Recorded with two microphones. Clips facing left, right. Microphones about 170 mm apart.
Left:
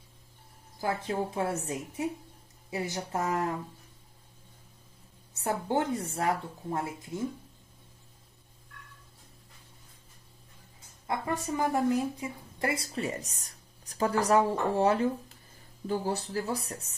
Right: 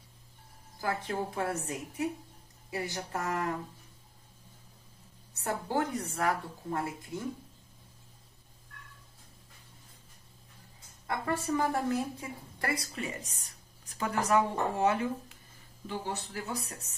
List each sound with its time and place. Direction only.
0.7 s a woman's voice: 25° left (ahead or behind)
5.4 s a woman's voice: 25° left (ahead or behind)
11.1 s a woman's voice: 20° left (ahead or behind); by 16.9 s 35° left (ahead or behind)